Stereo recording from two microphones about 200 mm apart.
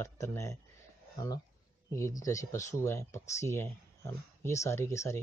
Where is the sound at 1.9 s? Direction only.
15° left (ahead or behind).